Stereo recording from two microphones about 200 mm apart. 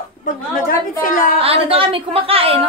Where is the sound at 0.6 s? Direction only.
45° left (ahead or behind).